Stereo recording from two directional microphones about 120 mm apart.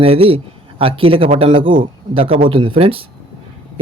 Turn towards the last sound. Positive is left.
turn(degrees=-50)  # may be behind; listen again after turning